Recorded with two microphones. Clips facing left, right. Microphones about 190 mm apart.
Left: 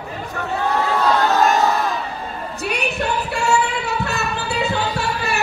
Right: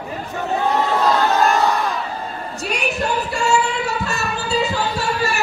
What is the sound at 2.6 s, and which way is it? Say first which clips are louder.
Singing: even; 60° left (ahead or behind).